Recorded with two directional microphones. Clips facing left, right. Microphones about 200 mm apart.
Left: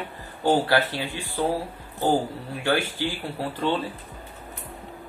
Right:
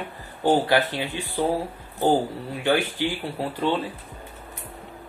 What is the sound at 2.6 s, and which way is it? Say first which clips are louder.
Speech: right 2 dB; 20° right (ahead or behind).